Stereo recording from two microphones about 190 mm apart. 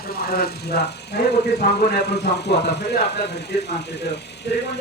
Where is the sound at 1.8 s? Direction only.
55° left (ahead or behind).